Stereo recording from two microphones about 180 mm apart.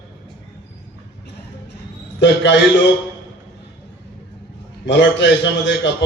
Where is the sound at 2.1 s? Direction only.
80° left.